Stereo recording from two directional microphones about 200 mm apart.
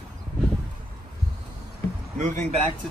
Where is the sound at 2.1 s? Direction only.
40° right (ahead or behind).